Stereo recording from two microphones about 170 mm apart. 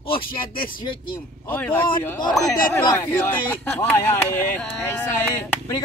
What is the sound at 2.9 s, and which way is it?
Speech, 10° left (ahead or behind).